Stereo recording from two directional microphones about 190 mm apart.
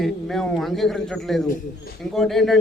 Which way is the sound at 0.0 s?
Centre (ahead or behind).